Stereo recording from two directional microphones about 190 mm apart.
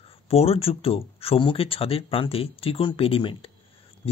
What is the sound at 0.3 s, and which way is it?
Speech, 30° left (ahead or behind).